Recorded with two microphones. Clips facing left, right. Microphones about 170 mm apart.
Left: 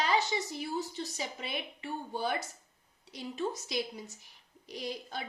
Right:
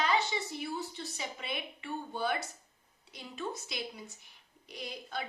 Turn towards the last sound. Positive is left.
turn(degrees=35)  # may be behind; listen again after turning